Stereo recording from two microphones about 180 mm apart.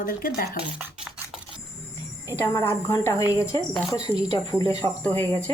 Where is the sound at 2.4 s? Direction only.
15° left (ahead or behind).